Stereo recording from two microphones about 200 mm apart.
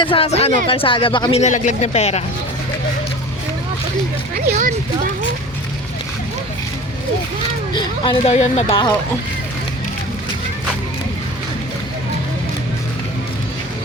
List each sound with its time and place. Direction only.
0.0 s a woman's voice: 25° left (ahead or behind)
4.4 s speech: 40° right (ahead or behind)
7.7 s speech: 25° left (ahead or behind)